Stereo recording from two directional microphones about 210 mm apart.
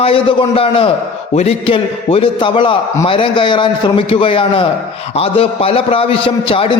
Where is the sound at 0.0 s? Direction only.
25° left (ahead or behind).